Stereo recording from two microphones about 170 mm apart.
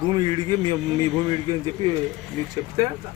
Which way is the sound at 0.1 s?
25° right (ahead or behind).